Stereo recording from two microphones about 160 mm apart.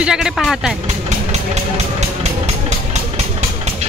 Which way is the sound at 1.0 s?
45° right (ahead or behind).